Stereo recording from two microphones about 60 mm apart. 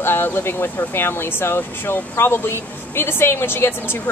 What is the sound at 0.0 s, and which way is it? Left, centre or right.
Speech, left.